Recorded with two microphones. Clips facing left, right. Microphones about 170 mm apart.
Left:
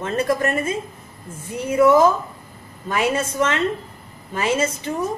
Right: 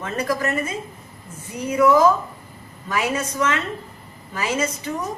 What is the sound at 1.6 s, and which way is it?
A woman's voice, 25° left (ahead or behind).